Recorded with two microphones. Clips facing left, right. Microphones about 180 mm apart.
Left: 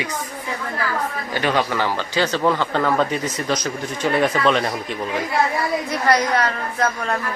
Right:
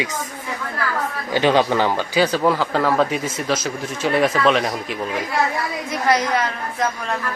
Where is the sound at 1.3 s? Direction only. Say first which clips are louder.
Right 5 dB; 20° right (ahead or behind); by 5.0 s centre (ahead or behind).